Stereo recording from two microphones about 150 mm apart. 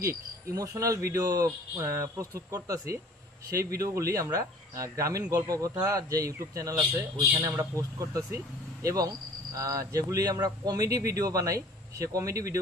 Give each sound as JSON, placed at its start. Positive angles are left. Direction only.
{"t": 0.0, "sound": "speech", "side_deg": -20}